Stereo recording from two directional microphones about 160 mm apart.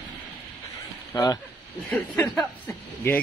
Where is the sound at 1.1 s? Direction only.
25° left (ahead or behind).